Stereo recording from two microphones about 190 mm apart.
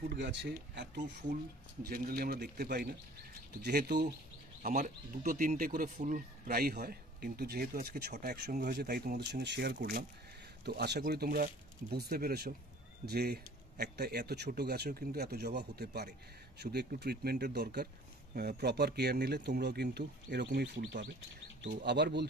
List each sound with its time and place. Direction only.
0.1 s speech: 65° right (ahead or behind)
4.6 s speech: 45° right (ahead or behind); by 22.3 s 60° right (ahead or behind)